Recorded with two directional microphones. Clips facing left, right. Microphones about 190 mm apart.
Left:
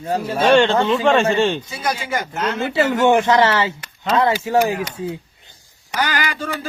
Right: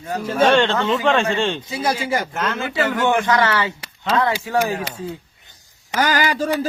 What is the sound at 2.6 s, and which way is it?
Speech, 25° left (ahead or behind).